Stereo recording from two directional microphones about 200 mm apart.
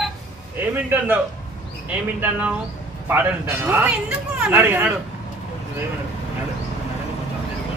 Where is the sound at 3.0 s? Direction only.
10° right (ahead or behind).